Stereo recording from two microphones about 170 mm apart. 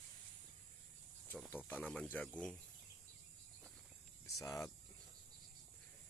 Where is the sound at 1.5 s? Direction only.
10° left (ahead or behind).